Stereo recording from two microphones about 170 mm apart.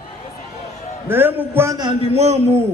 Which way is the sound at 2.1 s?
40° right (ahead or behind).